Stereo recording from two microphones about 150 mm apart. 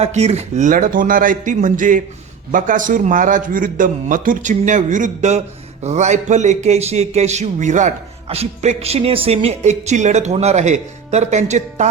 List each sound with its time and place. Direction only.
0.0 s a man's voice: 45° right (ahead or behind)